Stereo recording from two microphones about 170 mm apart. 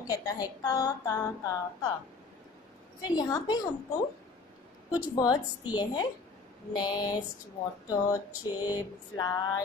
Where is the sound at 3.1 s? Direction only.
25° left (ahead or behind).